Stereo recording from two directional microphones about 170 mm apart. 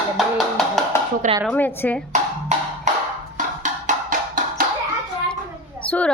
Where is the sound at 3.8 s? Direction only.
50° right (ahead or behind).